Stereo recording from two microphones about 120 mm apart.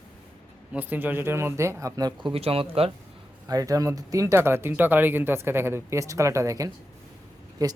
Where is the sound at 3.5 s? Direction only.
30° right (ahead or behind).